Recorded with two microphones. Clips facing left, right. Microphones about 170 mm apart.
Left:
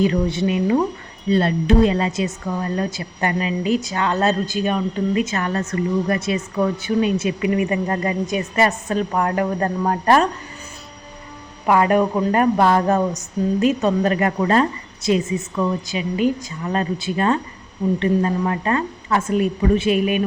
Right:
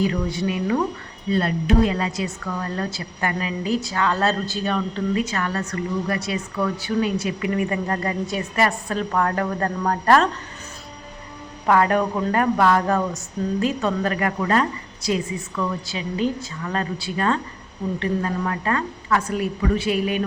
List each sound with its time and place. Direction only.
0.0 s a woman's voice: 25° left (ahead or behind)
11.6 s a woman's voice: 15° left (ahead or behind)